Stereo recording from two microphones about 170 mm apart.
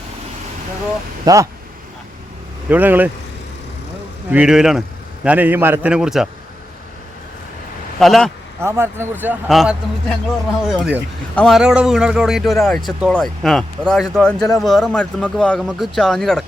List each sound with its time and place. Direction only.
1.2 s speech: 20° right (ahead or behind)
2.6 s a man's voice: 10° right (ahead or behind)
4.3 s a man's voice: 5° right (ahead or behind)
7.9 s a man's voice: centre (ahead or behind)
8.6 s a man's voice: 15° right (ahead or behind); by 16.4 s 5° left (ahead or behind)